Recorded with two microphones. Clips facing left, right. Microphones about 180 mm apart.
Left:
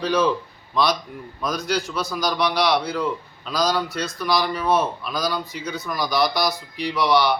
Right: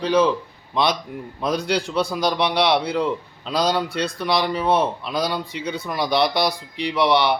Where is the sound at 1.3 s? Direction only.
30° right (ahead or behind).